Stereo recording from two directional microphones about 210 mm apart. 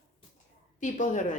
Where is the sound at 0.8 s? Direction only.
35° left (ahead or behind).